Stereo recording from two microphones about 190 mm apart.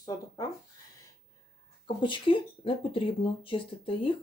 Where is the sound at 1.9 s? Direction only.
25° left (ahead or behind).